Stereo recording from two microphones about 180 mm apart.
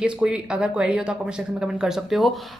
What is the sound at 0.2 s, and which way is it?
Speech, 5° right (ahead or behind).